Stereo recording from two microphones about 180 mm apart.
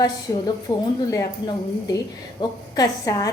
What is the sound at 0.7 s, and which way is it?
A woman's voice, 20° left (ahead or behind).